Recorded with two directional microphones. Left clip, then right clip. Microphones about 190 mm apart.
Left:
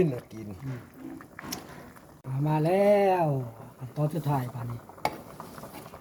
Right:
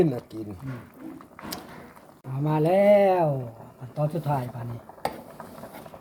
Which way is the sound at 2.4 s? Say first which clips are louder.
Right 4 dB; centre (ahead or behind).